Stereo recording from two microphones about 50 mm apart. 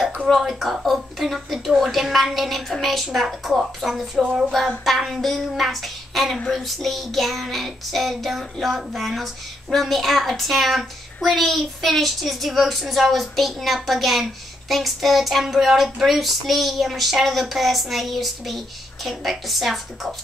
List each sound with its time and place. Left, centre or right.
0.4 s a child's voice: centre
4.2 s a sound: centre
4.5 s a child's voice: centre